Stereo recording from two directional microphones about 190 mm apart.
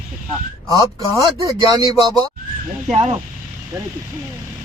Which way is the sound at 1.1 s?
15° right (ahead or behind).